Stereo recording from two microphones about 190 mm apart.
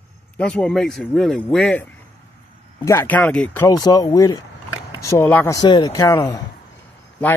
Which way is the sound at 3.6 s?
20° left (ahead or behind).